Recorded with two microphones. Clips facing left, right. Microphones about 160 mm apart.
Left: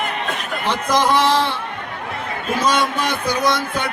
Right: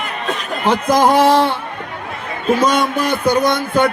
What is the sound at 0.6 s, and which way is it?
Speech, 50° right (ahead or behind).